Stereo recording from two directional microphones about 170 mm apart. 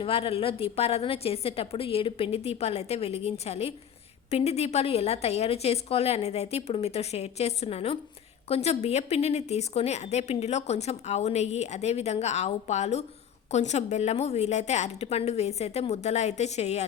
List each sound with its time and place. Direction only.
0.0 s speech: 35° left (ahead or behind)